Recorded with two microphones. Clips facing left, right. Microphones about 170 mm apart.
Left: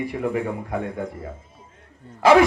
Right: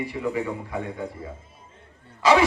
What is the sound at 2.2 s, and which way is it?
Speech, 55° left (ahead or behind).